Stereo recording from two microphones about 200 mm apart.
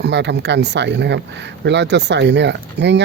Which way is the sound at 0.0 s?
60° right (ahead or behind).